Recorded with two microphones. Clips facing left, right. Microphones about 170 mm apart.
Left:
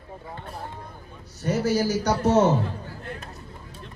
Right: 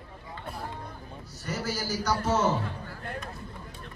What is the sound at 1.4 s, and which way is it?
Speech, 65° left (ahead or behind).